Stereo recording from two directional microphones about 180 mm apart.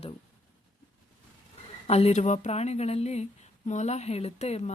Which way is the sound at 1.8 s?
35° left (ahead or behind).